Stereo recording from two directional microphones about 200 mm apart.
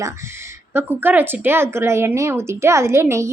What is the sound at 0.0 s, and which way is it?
Speech, 15° right (ahead or behind).